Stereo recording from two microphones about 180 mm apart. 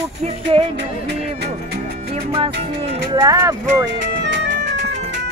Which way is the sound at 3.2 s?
20° right (ahead or behind).